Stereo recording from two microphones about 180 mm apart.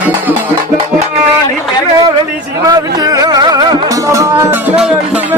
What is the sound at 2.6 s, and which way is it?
Music, 20° right (ahead or behind).